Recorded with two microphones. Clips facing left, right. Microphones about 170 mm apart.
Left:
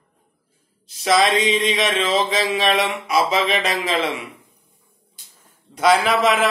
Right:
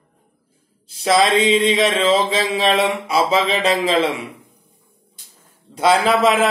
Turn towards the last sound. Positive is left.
turn(degrees=-30)  # may be behind; listen again after turning